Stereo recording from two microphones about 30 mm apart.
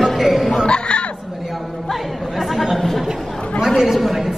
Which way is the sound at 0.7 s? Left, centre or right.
Left.